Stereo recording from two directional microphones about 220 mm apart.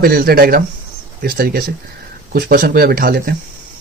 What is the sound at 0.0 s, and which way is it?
Speech, 45° right (ahead or behind).